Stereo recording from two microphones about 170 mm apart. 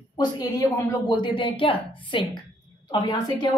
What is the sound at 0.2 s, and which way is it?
Speech, 20° left (ahead or behind).